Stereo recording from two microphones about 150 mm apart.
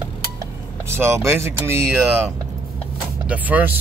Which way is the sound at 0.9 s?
15° right (ahead or behind).